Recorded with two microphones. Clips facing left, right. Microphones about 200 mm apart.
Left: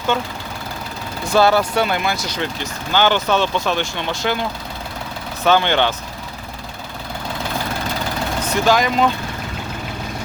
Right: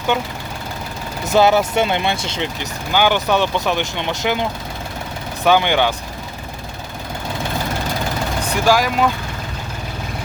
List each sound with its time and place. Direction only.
0.1 s speech: 15° right (ahead or behind)
8.4 s speech: 10° right (ahead or behind)